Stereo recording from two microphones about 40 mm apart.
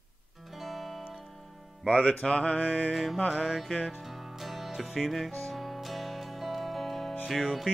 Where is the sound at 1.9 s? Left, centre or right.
Left.